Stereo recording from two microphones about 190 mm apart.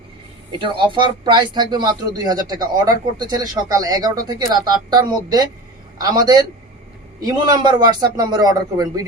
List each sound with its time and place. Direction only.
0.6 s speech: 25° right (ahead or behind)